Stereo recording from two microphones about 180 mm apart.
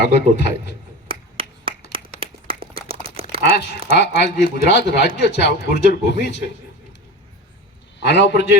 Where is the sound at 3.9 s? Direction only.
70° left (ahead or behind).